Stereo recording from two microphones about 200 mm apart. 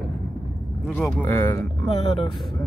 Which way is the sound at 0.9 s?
10° left (ahead or behind).